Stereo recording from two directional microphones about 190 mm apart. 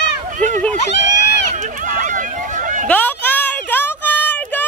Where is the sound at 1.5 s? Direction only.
45° right (ahead or behind).